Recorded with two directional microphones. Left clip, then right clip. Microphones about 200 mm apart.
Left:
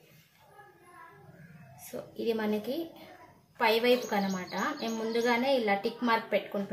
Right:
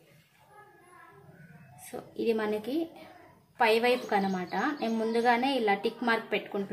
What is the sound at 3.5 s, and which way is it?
A woman's voice, 50° right (ahead or behind).